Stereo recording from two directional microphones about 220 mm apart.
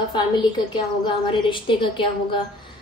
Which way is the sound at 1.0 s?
20° left (ahead or behind).